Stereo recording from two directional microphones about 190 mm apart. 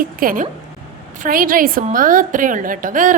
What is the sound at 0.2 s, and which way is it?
A woman's voice, 50° right (ahead or behind).